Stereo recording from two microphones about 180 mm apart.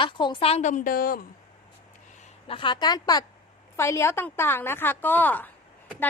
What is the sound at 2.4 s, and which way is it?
A woman's voice, 30° left (ahead or behind).